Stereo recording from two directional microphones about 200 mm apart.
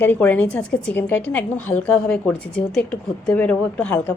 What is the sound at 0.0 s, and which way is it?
A woman's voice, 10° left (ahead or behind).